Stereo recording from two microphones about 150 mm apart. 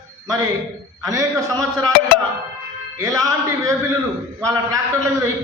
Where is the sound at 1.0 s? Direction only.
20° right (ahead or behind).